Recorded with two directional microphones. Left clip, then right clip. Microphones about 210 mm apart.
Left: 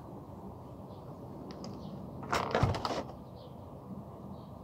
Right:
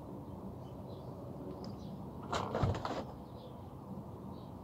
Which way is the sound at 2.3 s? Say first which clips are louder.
Left 5 dB; 50° left (ahead or behind).